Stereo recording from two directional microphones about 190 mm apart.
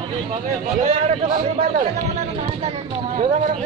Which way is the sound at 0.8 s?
45° right (ahead or behind).